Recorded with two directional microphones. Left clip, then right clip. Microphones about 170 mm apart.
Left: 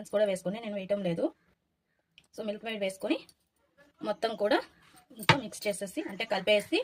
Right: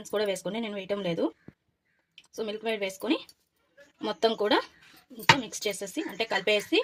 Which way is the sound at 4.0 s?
30° right (ahead or behind).